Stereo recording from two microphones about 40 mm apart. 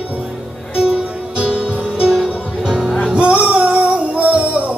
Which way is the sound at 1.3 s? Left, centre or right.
Right.